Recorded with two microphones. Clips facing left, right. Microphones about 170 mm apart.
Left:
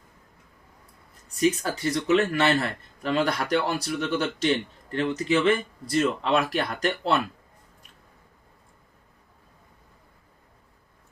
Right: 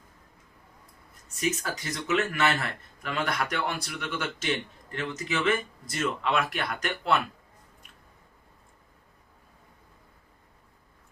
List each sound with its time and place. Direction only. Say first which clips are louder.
1.4 s speech: left 7 dB; 35° left (ahead or behind)